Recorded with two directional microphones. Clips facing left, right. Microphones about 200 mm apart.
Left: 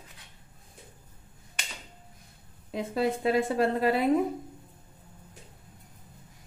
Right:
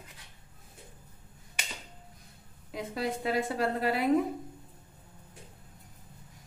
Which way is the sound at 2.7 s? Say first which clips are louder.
Left 5 dB; 25° left (ahead or behind).